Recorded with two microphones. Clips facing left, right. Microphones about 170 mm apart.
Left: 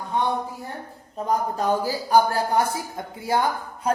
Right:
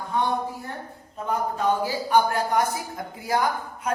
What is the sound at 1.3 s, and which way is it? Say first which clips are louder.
Speech: left 1 dB; 40° left (ahead or behind).